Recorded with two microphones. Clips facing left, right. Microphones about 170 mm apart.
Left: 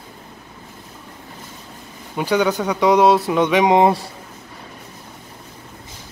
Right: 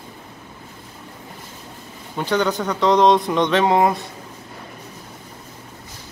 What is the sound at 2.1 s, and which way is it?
A man's voice, 10° left (ahead or behind).